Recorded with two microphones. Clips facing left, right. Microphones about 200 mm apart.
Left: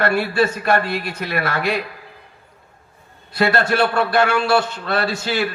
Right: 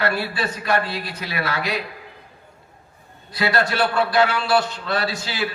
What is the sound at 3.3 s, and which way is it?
A man's voice, 50° left (ahead or behind).